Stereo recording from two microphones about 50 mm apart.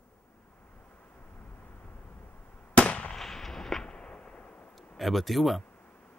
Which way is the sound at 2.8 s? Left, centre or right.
Left.